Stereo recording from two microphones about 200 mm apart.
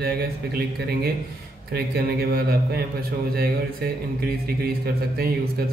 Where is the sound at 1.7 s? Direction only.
50° right (ahead or behind).